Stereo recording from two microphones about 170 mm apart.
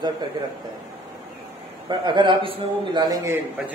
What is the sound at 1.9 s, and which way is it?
A man's voice, 25° right (ahead or behind).